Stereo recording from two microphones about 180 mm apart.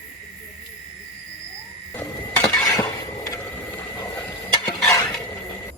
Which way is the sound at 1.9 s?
10° left (ahead or behind).